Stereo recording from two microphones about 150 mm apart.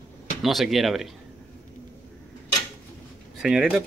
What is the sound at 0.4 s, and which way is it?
Speech, centre (ahead or behind).